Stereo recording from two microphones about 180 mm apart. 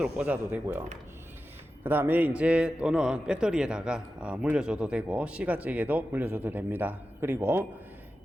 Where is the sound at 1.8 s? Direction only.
10° right (ahead or behind).